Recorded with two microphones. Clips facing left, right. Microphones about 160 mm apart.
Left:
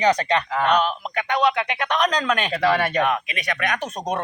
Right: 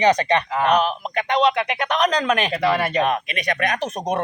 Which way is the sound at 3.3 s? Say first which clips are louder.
Right 3 dB; 45° right (ahead or behind).